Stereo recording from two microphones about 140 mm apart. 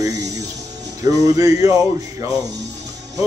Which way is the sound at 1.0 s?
25° right (ahead or behind).